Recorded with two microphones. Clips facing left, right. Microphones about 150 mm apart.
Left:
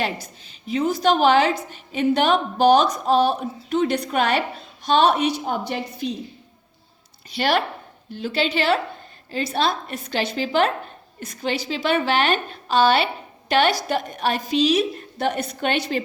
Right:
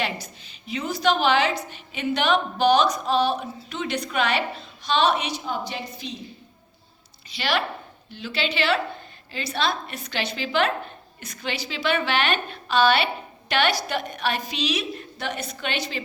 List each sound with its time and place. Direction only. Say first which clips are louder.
0.7 s a woman's voice: left 4 dB; 50° left (ahead or behind)
7.3 s a woman's voice: left 4 dB; 50° left (ahead or behind)